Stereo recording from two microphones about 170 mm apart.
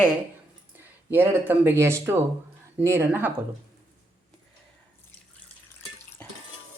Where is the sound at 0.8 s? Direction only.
10° right (ahead or behind).